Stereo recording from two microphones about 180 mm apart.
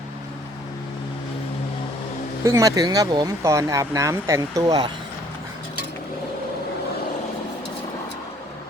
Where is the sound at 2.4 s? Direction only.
15° right (ahead or behind).